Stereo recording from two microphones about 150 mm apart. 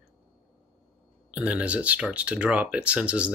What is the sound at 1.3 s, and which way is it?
Speech, 10° right (ahead or behind).